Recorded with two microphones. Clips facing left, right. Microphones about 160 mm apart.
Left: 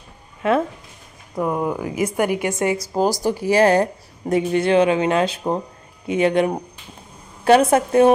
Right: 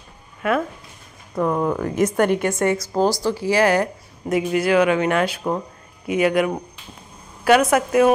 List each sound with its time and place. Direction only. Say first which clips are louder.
0.4 s speech: left 2 dB; 25° left (ahead or behind)
1.3 s a woman's voice: right 1 dB; 15° left (ahead or behind); by 8.1 s 30° left (ahead or behind)